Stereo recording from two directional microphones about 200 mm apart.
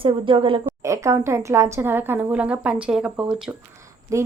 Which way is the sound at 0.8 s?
15° right (ahead or behind).